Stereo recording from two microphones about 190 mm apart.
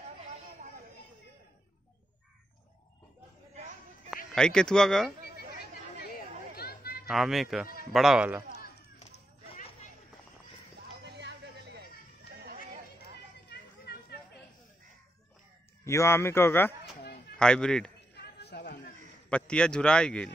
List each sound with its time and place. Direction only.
4.4 s a man's voice: 5° left (ahead or behind)
5.9 s chatter: 55° left (ahead or behind)
7.1 s a man's voice: centre (ahead or behind)
9.5 s a sound: 35° left (ahead or behind)
11.1 s music: 60° right (ahead or behind)
15.8 s a man's voice: 15° left (ahead or behind)
18.1 s chatter: 60° left (ahead or behind)
19.2 s a man's voice: 5° left (ahead or behind)